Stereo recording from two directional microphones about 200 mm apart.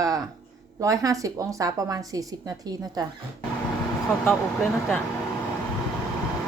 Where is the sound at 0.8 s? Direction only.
15° right (ahead or behind).